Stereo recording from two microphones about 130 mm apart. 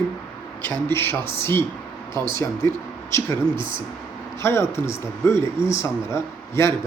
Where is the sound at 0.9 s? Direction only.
20° left (ahead or behind).